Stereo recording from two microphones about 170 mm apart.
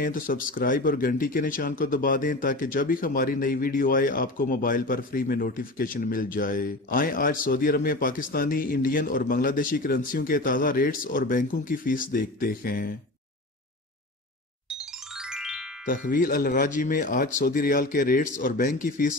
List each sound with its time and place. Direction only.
0.0 s speech: 55° left (ahead or behind)
14.8 s music: 5° right (ahead or behind)
15.8 s speech: 55° left (ahead or behind)